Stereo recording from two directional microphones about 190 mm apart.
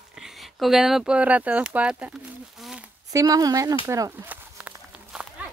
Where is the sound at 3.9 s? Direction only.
15° right (ahead or behind).